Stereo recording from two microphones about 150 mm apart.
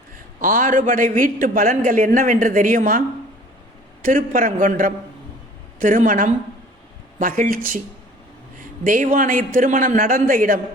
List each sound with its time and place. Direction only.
0.3 s a man's voice: 60° right (ahead or behind)
4.0 s a man's voice: 65° right (ahead or behind)
8.8 s a man's voice: 65° right (ahead or behind)